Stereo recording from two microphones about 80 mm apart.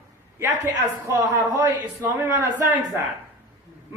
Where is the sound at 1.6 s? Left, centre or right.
Right.